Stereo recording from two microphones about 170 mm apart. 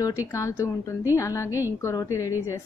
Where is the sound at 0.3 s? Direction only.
15° left (ahead or behind).